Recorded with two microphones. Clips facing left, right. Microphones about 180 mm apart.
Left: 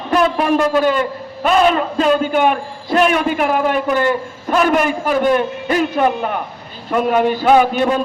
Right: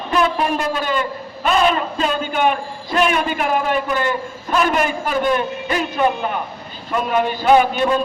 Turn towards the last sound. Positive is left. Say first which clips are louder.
# left 2 dB
turn(degrees=50)  # may be behind; listen again after turning